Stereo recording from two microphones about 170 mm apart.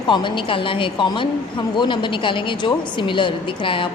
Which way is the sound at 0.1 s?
30° left (ahead or behind).